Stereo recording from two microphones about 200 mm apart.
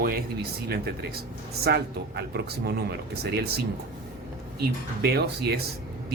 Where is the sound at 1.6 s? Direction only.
55° right (ahead or behind).